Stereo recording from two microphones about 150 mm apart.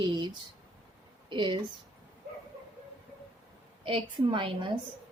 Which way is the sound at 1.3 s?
30° right (ahead or behind).